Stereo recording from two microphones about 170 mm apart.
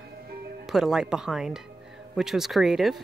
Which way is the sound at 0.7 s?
5° right (ahead or behind).